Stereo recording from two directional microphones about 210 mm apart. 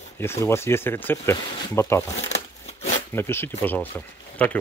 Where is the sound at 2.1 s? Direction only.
30° left (ahead or behind).